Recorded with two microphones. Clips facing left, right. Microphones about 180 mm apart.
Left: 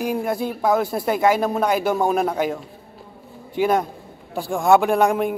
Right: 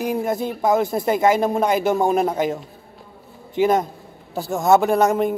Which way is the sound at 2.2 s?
5° right (ahead or behind).